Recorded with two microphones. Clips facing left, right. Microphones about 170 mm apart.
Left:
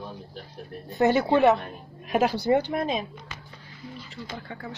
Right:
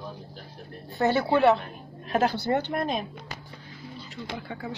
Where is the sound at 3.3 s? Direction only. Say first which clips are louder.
Right 3 dB; 40° right (ahead or behind).